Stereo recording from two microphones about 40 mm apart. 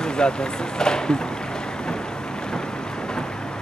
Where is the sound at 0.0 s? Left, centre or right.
Left.